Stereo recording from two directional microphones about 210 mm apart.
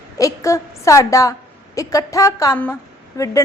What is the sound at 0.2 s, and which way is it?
A woman's voice, 15° left (ahead or behind).